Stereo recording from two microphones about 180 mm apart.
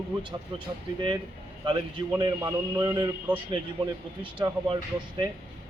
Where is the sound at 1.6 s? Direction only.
25° right (ahead or behind).